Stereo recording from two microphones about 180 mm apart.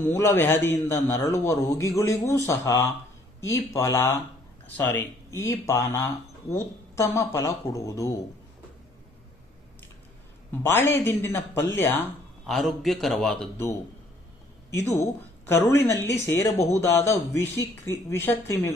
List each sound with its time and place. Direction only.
0.1 s speech: 10° left (ahead or behind)
5.3 s speech: 15° left (ahead or behind)
10.6 s speech: 15° left (ahead or behind)
14.7 s speech: 15° left (ahead or behind)